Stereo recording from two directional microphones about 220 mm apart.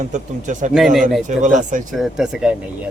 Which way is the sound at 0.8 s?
Centre (ahead or behind).